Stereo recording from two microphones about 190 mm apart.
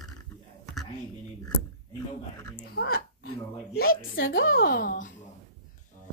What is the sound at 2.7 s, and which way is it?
Speech, 55° left (ahead or behind).